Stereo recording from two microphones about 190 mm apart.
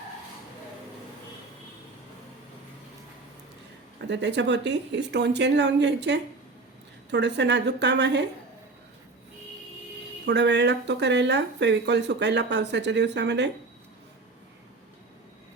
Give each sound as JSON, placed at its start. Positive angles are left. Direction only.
{"t": 4.1, "sound": "a woman's voice", "side_deg": -65}
{"t": 10.2, "sound": "speech", "side_deg": -65}